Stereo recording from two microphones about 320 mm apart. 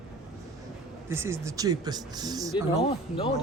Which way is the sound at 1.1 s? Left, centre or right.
Centre.